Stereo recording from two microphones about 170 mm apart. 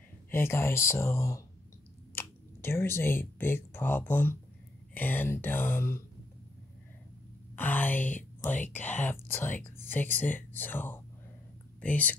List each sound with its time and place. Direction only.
0.3 s speech: 15° left (ahead or behind)
7.5 s a sound: 10° left (ahead or behind)
8.4 s speech: 10° left (ahead or behind)